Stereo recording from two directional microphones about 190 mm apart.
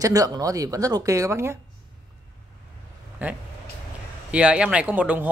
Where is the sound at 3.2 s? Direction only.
10° right (ahead or behind).